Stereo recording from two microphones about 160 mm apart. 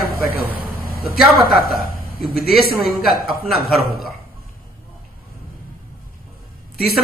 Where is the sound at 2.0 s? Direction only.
65° left (ahead or behind).